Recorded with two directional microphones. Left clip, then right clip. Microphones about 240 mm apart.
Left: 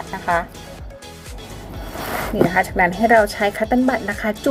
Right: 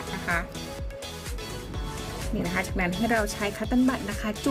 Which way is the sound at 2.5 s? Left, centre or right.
Right.